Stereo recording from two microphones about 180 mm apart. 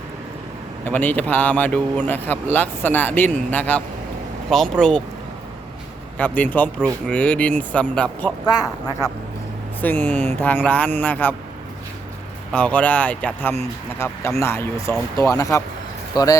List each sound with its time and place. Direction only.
0.9 s speech: 10° left (ahead or behind)
6.1 s speech: 10° left (ahead or behind)
8.4 s a man's voice: 20° left (ahead or behind)
12.5 s a man's voice: 5° left (ahead or behind)